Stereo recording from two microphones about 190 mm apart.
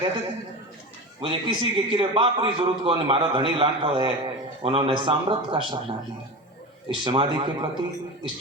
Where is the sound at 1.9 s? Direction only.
25° right (ahead or behind).